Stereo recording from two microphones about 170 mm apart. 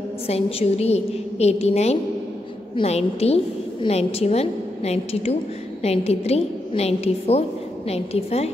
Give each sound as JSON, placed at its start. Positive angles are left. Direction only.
{"t": 0.3, "sound": "a woman's voice", "side_deg": 35}